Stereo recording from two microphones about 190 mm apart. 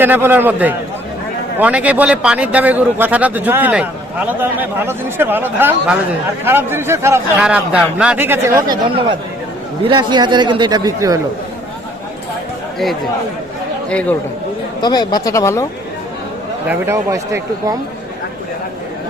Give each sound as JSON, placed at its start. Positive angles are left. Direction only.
{"t": 0.0, "sound": "a man's voice", "side_deg": -10}
{"t": 14.8, "sound": "speech", "side_deg": 20}
{"t": 16.6, "sound": "a man's voice", "side_deg": -15}